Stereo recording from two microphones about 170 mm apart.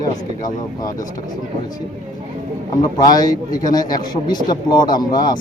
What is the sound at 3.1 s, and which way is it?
A man's voice, 25° left (ahead or behind).